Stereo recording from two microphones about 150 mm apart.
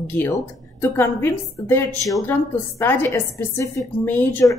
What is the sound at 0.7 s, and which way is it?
A woman's voice, 15° left (ahead or behind).